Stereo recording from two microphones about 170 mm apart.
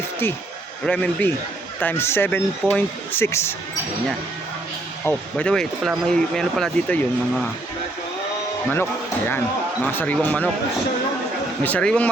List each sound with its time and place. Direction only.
0.9 s speech: 10° left (ahead or behind)
5.0 s speech: 10° left (ahead or behind)
8.7 s speech: 10° left (ahead or behind)
11.6 s speech: 5° left (ahead or behind)